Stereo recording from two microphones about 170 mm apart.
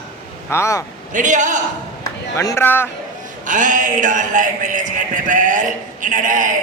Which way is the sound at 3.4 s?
50° right (ahead or behind).